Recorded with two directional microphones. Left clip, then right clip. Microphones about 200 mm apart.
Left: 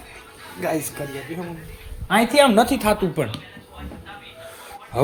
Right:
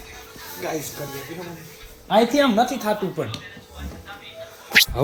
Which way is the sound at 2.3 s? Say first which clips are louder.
Left 4 dB; 35° left (ahead or behind).